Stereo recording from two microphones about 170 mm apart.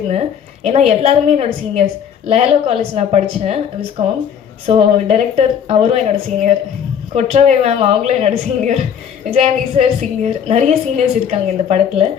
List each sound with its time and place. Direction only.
0.1 s a woman's voice: 40° right (ahead or behind)